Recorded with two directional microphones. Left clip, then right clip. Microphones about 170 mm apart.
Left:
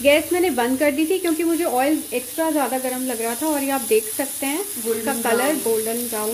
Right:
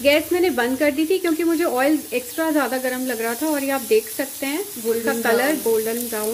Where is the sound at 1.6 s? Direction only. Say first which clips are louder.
Right 1 dB; 20° right (ahead or behind).